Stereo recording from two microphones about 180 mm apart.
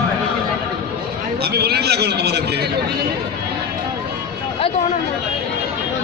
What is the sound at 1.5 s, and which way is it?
Speech, 65° right (ahead or behind).